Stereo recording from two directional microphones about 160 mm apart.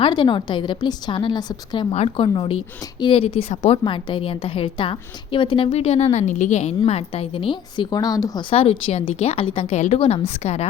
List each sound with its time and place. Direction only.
0.0 s a woman's voice: 30° left (ahead or behind)